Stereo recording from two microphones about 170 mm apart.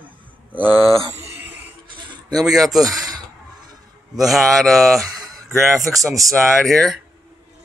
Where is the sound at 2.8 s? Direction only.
20° right (ahead or behind).